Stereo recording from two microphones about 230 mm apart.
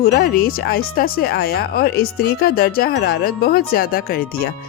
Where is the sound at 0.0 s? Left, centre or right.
Left.